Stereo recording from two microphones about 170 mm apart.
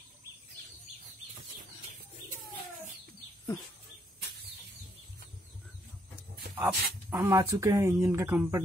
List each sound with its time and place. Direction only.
6.6 s speech: 10° right (ahead or behind)